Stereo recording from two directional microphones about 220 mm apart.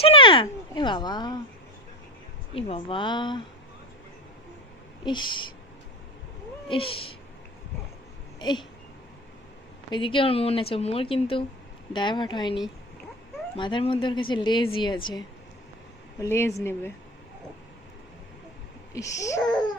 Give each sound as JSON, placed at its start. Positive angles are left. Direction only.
{"t": 0.0, "sound": "speech", "side_deg": 25}
{"t": 2.6, "sound": "a woman's voice", "side_deg": 25}
{"t": 5.0, "sound": "a woman's voice", "side_deg": 20}
{"t": 6.7, "sound": "a woman's voice", "side_deg": 25}
{"t": 8.4, "sound": "a sound", "side_deg": 20}
{"t": 9.9, "sound": "a woman's voice", "side_deg": 25}
{"t": 16.2, "sound": "speech", "side_deg": 15}
{"t": 18.9, "sound": "speech", "side_deg": 15}